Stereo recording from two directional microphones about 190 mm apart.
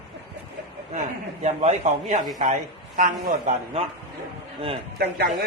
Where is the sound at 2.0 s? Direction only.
45° right (ahead or behind).